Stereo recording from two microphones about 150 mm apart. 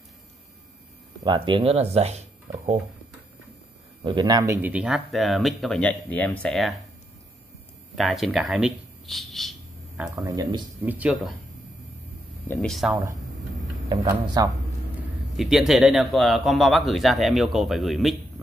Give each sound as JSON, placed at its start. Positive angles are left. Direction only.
{"t": 1.2, "sound": "speech", "side_deg": -30}
{"t": 4.0, "sound": "speech", "side_deg": -30}
{"t": 4.6, "sound": "a man's voice", "side_deg": -10}
{"t": 7.9, "sound": "speech", "side_deg": 0}
{"t": 10.0, "sound": "speech", "side_deg": -20}
{"t": 10.8, "sound": "speech", "side_deg": -10}
{"t": 12.5, "sound": "a man's voice", "side_deg": 0}
{"t": 14.2, "sound": "speech", "side_deg": -25}
{"t": 15.0, "sound": "a man's voice", "side_deg": 0}